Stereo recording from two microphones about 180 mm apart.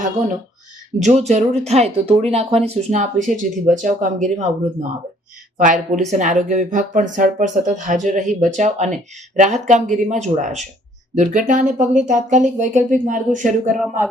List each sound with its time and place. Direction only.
0.9 s speech: 40° right (ahead or behind)
5.5 s speech: 45° right (ahead or behind)